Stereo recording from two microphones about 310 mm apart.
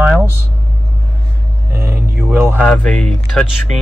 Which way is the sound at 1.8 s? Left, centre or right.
Centre.